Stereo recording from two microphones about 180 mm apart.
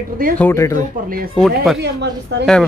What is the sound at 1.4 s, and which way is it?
Speech, centre (ahead or behind).